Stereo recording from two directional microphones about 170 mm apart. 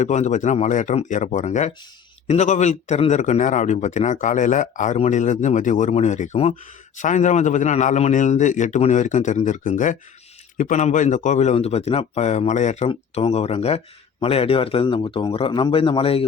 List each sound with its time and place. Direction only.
0.0 s a man's voice: 45° left (ahead or behind)